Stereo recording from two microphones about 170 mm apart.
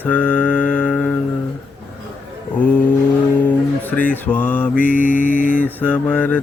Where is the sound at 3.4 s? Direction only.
10° left (ahead or behind).